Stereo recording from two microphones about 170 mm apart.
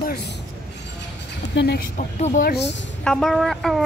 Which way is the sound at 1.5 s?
75° left (ahead or behind).